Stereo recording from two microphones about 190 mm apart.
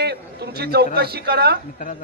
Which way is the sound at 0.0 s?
60° right (ahead or behind).